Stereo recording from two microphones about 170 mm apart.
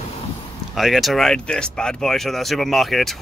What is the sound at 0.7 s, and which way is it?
Speech, centre (ahead or behind).